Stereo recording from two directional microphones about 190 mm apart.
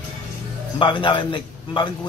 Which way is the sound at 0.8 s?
25° left (ahead or behind).